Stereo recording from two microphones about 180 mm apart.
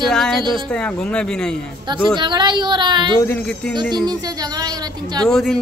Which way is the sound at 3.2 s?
10° left (ahead or behind).